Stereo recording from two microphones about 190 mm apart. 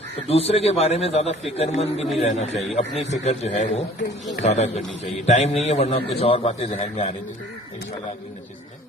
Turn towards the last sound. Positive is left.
turn(degrees=30)  # may be behind; listen again after turning